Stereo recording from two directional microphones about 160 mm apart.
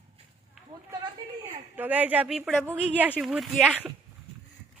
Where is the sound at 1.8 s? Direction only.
10° right (ahead or behind).